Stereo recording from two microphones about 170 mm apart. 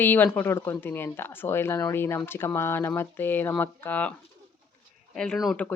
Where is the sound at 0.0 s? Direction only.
10° left (ahead or behind).